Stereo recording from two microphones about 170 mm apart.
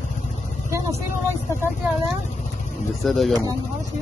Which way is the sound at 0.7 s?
20° right (ahead or behind).